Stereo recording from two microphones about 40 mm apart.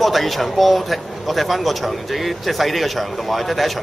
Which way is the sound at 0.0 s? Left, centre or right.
Centre.